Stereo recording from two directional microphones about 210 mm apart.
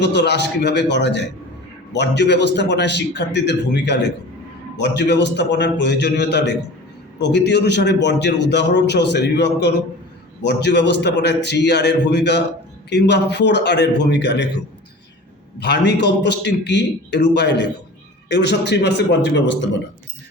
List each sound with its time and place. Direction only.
0.0 s a man's voice: 55° left (ahead or behind)
15.5 s a man's voice: 55° left (ahead or behind)